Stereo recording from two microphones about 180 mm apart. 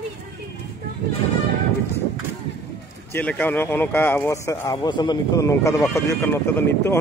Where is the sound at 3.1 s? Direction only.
10° left (ahead or behind).